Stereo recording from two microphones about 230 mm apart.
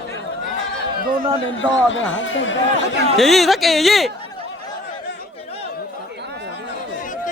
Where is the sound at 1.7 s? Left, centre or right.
Left.